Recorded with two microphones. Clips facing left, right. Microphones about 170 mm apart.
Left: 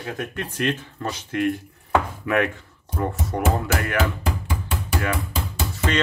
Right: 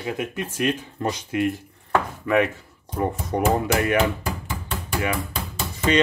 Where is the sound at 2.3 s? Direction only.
Centre (ahead or behind).